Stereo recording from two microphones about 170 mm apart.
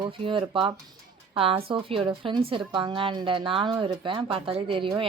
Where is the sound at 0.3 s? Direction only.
30° right (ahead or behind).